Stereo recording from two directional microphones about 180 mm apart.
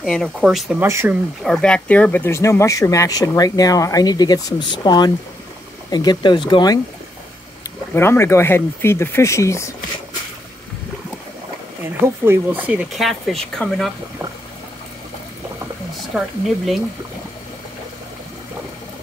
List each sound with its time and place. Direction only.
0.0 s speech: centre (ahead or behind)
0.8 s speech: 15° right (ahead or behind)
1.4 s speech: 5° left (ahead or behind); by 6.8 s 25° left (ahead or behind)
7.9 s speech: 15° left (ahead or behind)
11.8 s speech: 10° right (ahead or behind)
16.1 s speech: 5° right (ahead or behind)